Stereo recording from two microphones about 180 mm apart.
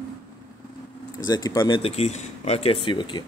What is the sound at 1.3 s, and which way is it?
Speech, 20° left (ahead or behind).